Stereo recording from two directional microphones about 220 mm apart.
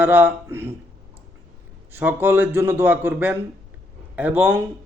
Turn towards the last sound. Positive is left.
turn(degrees=-10)  # may be behind; listen again after turning